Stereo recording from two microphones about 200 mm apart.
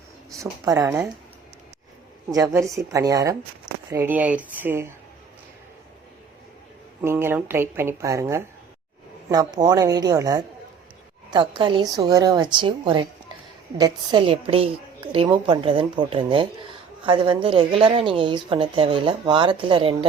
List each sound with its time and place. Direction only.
0.6 s a woman's voice: 15° right (ahead or behind)
2.3 s a woman's voice: 15° right (ahead or behind)
7.0 s a woman's voice: 10° right (ahead or behind)